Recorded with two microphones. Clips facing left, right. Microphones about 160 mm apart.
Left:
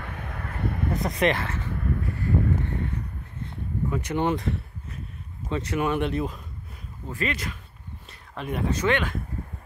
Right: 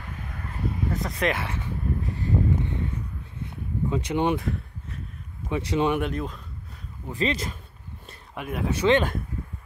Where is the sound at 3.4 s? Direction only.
20° right (ahead or behind).